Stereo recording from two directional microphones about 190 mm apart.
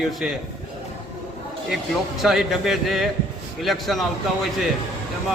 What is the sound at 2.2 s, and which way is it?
A man's voice, centre (ahead or behind).